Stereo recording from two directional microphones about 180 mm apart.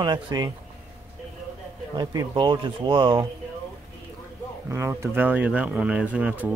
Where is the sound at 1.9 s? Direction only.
25° right (ahead or behind).